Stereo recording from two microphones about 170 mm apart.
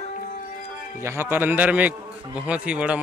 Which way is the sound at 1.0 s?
15° right (ahead or behind).